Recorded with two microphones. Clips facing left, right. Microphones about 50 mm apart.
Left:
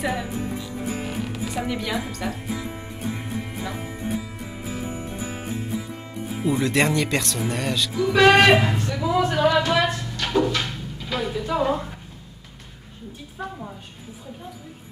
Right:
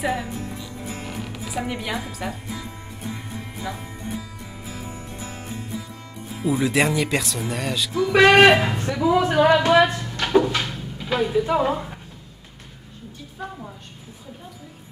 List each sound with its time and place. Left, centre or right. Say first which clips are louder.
0.0 s speech: even; centre
0.8 s music: left 4 dB; centre
1.1 s music: left 2 dB; centre
2.4 s speech: left 4 dB; centre
3.1 s music: left 4 dB; centre
5.5 s music: left 3 dB; centre
6.4 s speech: right 1 dB; centre
8.2 s speech: right 1 dB; centre
8.6 s speech: right 3 dB; centre
9.5 s a sound: right 5 dB; right
10.5 s a sound: right 1 dB; centre
11.1 s a woman's voice: right 4 dB; centre
13.4 s a woman's voice: left 1 dB; centre